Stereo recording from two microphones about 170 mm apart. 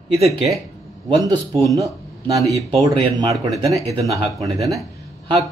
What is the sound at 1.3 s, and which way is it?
Speech, 35° right (ahead or behind).